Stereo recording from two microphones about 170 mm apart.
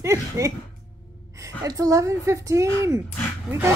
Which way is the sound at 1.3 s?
20° right (ahead or behind).